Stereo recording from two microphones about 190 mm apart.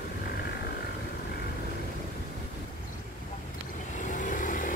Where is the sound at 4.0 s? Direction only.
40° left (ahead or behind).